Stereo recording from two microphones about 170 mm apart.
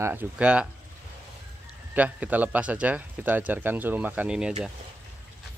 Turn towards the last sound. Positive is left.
turn(degrees=-5)  # may be behind; listen again after turning